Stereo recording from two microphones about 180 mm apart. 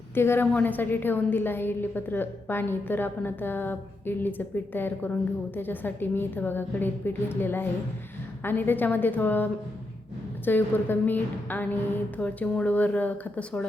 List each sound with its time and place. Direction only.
0.1 s a woman's voice: 10° left (ahead or behind)